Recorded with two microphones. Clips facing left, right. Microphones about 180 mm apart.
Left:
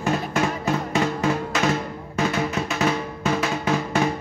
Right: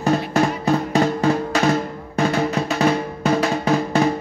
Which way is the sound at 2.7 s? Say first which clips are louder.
Right 4 dB; 35° right (ahead or behind).